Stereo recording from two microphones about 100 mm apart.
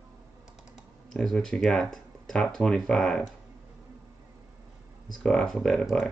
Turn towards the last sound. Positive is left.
turn(degrees=5)  # may be behind; listen again after turning